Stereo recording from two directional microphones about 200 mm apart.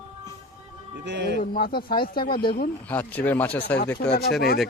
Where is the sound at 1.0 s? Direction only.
55° right (ahead or behind).